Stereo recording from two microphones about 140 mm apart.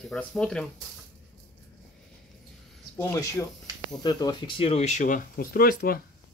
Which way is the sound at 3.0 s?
20° left (ahead or behind).